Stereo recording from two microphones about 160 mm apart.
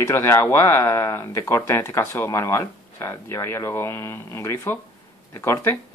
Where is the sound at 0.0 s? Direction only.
15° left (ahead or behind).